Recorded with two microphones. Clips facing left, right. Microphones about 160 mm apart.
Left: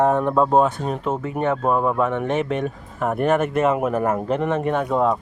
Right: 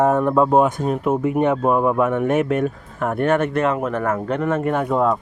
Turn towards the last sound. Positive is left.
turn(degrees=0)  # may be behind; listen again after turning